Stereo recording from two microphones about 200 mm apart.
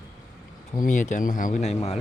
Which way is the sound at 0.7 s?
40° left (ahead or behind).